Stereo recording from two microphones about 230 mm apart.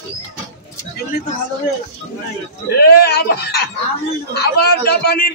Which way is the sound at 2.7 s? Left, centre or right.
Left.